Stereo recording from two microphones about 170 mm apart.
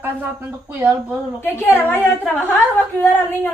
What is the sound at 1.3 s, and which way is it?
A woman's voice, 15° left (ahead or behind).